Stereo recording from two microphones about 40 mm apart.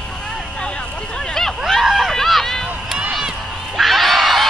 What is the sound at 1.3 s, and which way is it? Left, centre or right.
Hubbub, centre.